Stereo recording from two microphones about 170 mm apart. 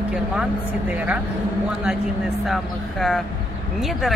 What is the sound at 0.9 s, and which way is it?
Speech, 10° right (ahead or behind).